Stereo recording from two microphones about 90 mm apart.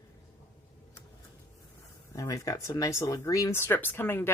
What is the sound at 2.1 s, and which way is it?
Speech, 40° left (ahead or behind).